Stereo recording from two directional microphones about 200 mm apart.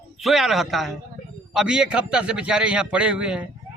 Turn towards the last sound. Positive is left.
turn(degrees=-5)  # may be behind; listen again after turning